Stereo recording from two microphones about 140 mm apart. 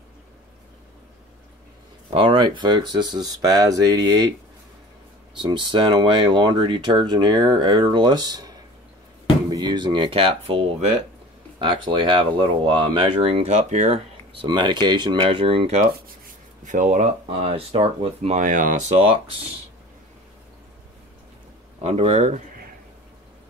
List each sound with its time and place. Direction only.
2.1 s speech: 35° right (ahead or behind)
5.4 s speech: 35° right (ahead or behind); by 14.0 s 55° right (ahead or behind)
14.4 s speech: 35° right (ahead or behind)
16.6 s speech: 65° right (ahead or behind); by 18.4 s 45° right (ahead or behind)
18.4 s speech: 70° right (ahead or behind); by 19.5 s 45° right (ahead or behind)
21.8 s speech: 50° right (ahead or behind)